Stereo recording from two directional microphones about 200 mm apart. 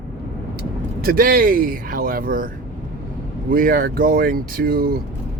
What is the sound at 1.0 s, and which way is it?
Speech, 45° right (ahead or behind).